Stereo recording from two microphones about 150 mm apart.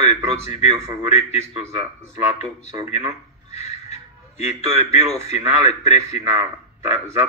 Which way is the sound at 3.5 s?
45° left (ahead or behind).